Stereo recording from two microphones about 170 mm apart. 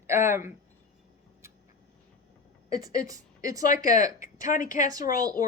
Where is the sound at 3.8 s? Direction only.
50° left (ahead or behind).